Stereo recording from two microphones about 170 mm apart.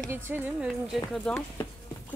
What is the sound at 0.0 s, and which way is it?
Speech, 10° right (ahead or behind).